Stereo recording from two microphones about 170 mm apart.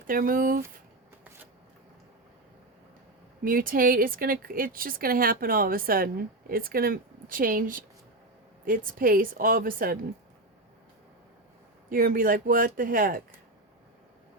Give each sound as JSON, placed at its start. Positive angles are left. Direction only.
{"t": 0.1, "sound": "speech", "side_deg": -55}
{"t": 3.4, "sound": "speech", "side_deg": -55}
{"t": 11.9, "sound": "speech", "side_deg": -60}